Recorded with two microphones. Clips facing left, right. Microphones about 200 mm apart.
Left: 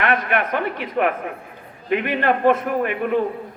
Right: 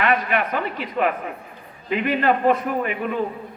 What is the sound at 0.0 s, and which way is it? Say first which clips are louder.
A man's voice: even; 50° left (ahead or behind).